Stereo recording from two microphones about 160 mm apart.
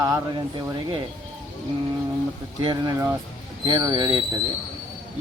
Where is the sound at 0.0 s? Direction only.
25° right (ahead or behind).